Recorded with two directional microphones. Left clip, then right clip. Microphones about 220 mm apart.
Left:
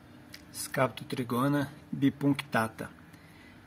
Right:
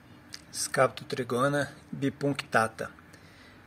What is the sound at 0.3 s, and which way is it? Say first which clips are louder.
Speech: right 5 dB; centre (ahead or behind).